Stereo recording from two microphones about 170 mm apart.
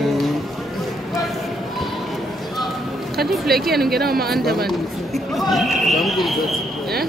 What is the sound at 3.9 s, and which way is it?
Speech, 65° right (ahead or behind).